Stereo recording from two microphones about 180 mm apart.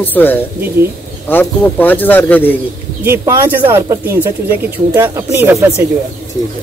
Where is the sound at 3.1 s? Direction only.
15° right (ahead or behind).